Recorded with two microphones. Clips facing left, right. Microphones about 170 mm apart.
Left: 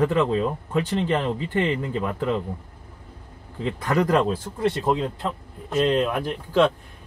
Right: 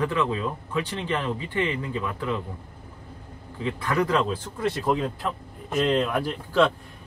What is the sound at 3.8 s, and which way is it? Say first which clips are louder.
Speech: left 3 dB; 45° left (ahead or behind).